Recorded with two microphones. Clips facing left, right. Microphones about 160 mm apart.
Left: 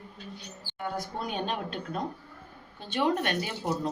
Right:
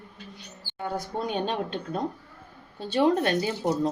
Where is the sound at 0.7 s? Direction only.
30° right (ahead or behind).